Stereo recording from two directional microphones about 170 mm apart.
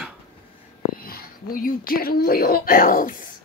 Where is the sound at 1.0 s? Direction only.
60° left (ahead or behind).